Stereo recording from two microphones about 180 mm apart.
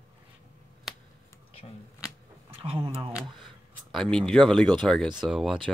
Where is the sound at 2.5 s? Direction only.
30° right (ahead or behind).